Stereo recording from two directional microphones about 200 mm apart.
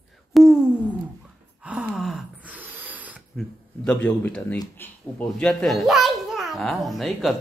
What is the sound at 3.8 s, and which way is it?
A child's voice, 5° left (ahead or behind).